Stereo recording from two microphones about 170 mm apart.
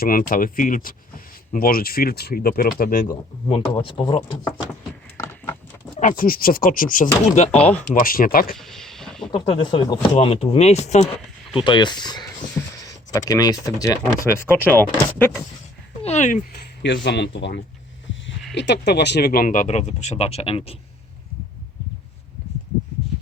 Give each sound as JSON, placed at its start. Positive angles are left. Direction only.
{"t": 0.0, "sound": "speech", "side_deg": 55}
{"t": 3.1, "sound": "speech", "side_deg": 20}
{"t": 5.1, "sound": "a sound", "side_deg": 15}
{"t": 6.0, "sound": "speech", "side_deg": 50}
{"t": 7.5, "sound": "speech", "side_deg": 10}
{"t": 7.9, "sound": "speech", "side_deg": 55}
{"t": 8.5, "sound": "a sound", "side_deg": 0}
{"t": 9.3, "sound": "speech", "side_deg": 30}
{"t": 11.5, "sound": "speech", "side_deg": 25}
{"t": 16.0, "sound": "speech", "side_deg": 45}
{"t": 16.8, "sound": "speech", "side_deg": 90}